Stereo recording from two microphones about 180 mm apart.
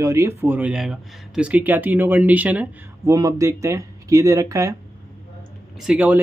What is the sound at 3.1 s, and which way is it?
Speech, 20° right (ahead or behind).